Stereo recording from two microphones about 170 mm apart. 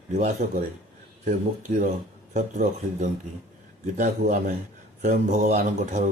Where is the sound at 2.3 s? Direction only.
45° right (ahead or behind).